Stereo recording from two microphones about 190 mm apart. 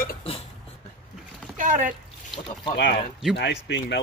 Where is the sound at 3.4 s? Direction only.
65° left (ahead or behind).